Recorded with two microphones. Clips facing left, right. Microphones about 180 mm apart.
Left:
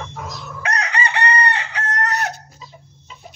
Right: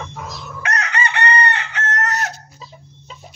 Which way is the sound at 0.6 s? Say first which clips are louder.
Even; 35° left (ahead or behind).